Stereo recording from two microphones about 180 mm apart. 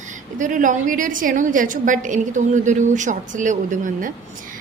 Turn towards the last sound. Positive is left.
turn(degrees=-45)  # may be behind; listen again after turning